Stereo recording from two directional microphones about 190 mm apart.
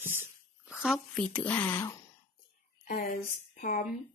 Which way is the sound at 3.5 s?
45° left (ahead or behind).